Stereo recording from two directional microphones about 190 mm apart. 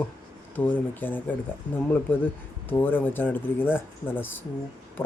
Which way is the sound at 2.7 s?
10° left (ahead or behind).